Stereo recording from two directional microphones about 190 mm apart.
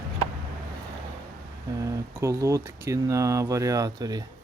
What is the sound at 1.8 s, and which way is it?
Speech, 15° right (ahead or behind).